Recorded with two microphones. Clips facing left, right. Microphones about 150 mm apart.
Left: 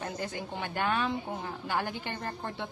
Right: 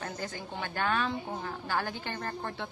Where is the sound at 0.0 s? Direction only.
20° left (ahead or behind).